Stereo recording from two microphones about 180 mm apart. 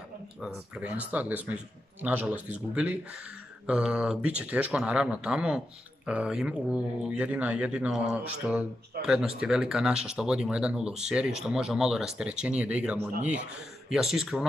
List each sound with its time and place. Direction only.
0.4 s speech: 10° right (ahead or behind)
9.0 s a sound: 55° right (ahead or behind)
9.4 s speech: centre (ahead or behind)